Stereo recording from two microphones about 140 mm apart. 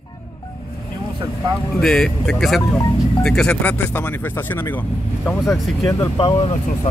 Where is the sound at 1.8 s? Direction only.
5° left (ahead or behind).